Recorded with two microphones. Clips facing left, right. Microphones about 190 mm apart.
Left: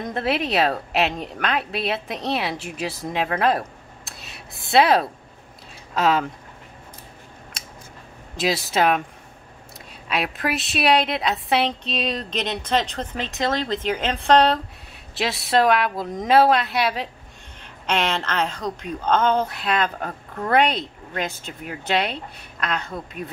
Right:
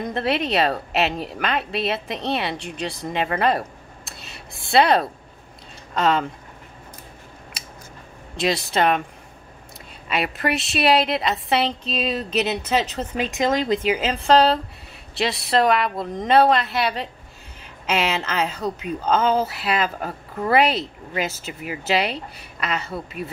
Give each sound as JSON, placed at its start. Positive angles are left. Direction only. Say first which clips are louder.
{"t": 0.0, "sound": "a woman's voice", "louder": "right 1 dB", "side_deg": 0}
{"t": 8.4, "sound": "a woman's voice", "louder": "even", "side_deg": 0}
{"t": 10.0, "sound": "a woman's voice", "louder": "right 1 dB", "side_deg": 0}